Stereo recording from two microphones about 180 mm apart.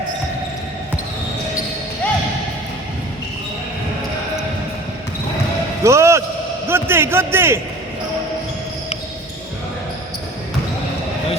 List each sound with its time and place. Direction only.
5.8 s a man's voice: 15° right (ahead or behind)